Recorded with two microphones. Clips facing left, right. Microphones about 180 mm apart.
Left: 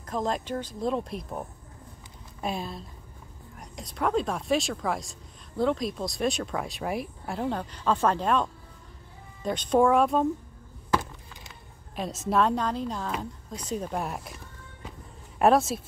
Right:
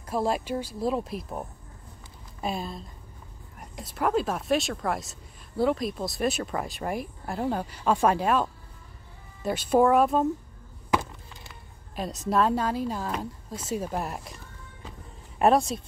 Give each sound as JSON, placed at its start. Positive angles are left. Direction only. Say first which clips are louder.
{"t": 0.0, "sound": "speech", "louder": "right 2 dB", "side_deg": -10}
{"t": 11.9, "sound": "speech", "louder": "even", "side_deg": 0}